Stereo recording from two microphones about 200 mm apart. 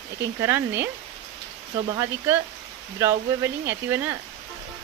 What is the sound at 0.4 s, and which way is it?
Speech, 10° right (ahead or behind).